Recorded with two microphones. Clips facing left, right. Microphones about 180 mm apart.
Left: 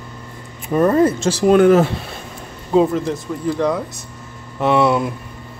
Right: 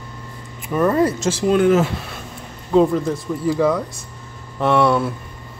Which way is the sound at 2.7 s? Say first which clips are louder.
Even; 5° left (ahead or behind).